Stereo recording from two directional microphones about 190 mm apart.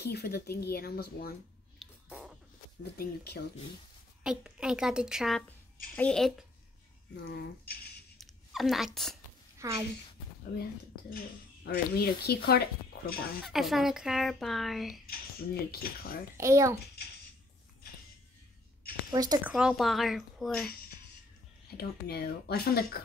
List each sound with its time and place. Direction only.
0.0 s speech: 55° left (ahead or behind)
1.8 s a sound: 5° right (ahead or behind)
2.8 s speech: 60° left (ahead or behind)
4.2 s speech: 5° right (ahead or behind)
7.2 s speech: 55° left (ahead or behind)
8.2 s a sound: centre (ahead or behind)
9.6 s speech: 15° right (ahead or behind)
11.1 s speech: 55° left (ahead or behind)
13.5 s speech: centre (ahead or behind)
15.0 s speech: 55° left (ahead or behind)
16.3 s a child's voice: 15° right (ahead or behind)
19.1 s speech: 20° right (ahead or behind)
19.4 s speech: 5° right (ahead or behind)
21.6 s speech: 55° left (ahead or behind)